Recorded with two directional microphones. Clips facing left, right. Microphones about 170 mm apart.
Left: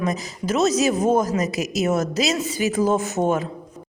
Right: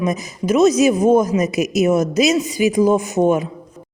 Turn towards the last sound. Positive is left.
turn(degrees=-15)  # may be behind; listen again after turning